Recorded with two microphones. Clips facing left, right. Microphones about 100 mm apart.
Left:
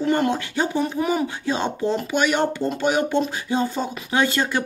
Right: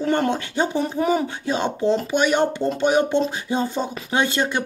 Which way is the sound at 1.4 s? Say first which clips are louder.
Right 4 dB; 20° right (ahead or behind).